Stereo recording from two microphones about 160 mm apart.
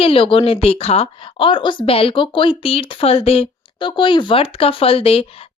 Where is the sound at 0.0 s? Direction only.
35° left (ahead or behind).